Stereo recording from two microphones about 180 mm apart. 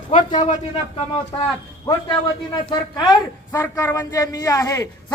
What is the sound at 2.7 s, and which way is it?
Speech, 20° left (ahead or behind).